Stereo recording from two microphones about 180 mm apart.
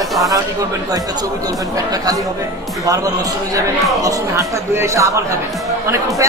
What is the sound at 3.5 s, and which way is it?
Speech, 15° right (ahead or behind).